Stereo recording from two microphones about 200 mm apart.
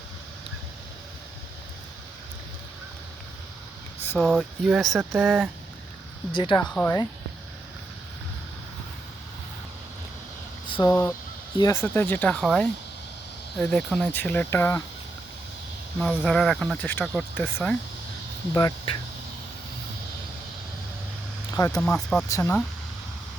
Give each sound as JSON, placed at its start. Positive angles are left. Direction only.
{"t": 4.2, "sound": "speech", "side_deg": 0}
{"t": 6.3, "sound": "speech", "side_deg": 25}
{"t": 10.7, "sound": "speech", "side_deg": 20}
{"t": 16.0, "sound": "speech", "side_deg": 5}
{"t": 18.5, "sound": "speech", "side_deg": 20}
{"t": 21.5, "sound": "speech", "side_deg": 15}
{"t": 21.8, "sound": "speech", "side_deg": 5}
{"t": 22.3, "sound": "speech", "side_deg": 15}